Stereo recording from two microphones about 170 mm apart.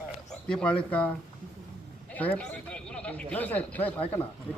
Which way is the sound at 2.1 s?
10° left (ahead or behind).